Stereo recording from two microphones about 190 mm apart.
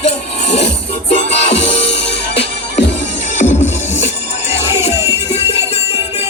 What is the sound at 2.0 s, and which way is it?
Music, 65° left (ahead or behind).